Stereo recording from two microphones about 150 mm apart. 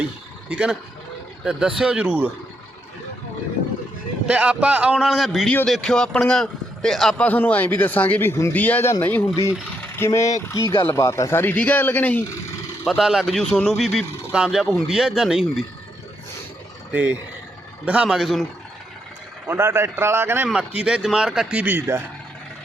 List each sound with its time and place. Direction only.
0.5 s speech: 5° right (ahead or behind)
4.3 s speech: 10° right (ahead or behind); by 12.2 s 10° left (ahead or behind)
12.8 s speech: centre (ahead or behind)
16.9 s speech: 10° right (ahead or behind)
19.5 s speech: 15° right (ahead or behind)